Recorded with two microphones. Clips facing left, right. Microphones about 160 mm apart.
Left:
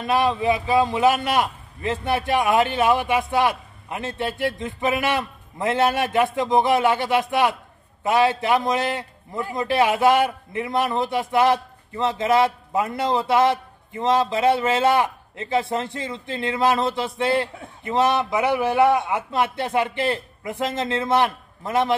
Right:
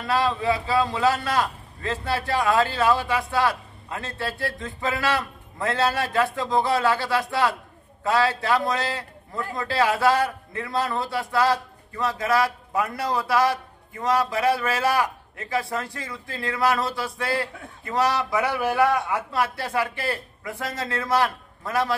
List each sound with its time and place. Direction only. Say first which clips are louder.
0.0 s a man's voice: left 3 dB; 20° left (ahead or behind)